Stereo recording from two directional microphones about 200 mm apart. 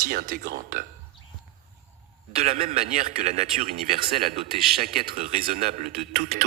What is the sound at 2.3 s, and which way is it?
A man's voice, 30° right (ahead or behind).